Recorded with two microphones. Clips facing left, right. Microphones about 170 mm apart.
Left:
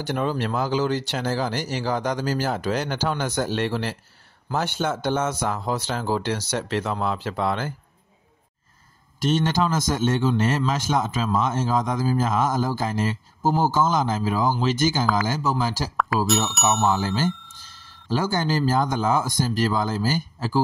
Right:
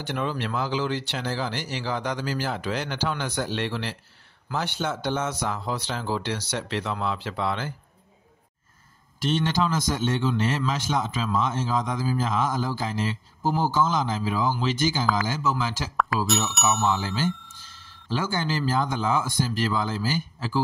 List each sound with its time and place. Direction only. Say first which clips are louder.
0.0 s a man's voice: left 4 dB; 40° left (ahead or behind)
9.2 s a man's voice: left 3 dB; 45° left (ahead or behind)
16.3 s speech: left 3 dB; centre (ahead or behind)
16.8 s a man's voice: left 3 dB; 45° left (ahead or behind)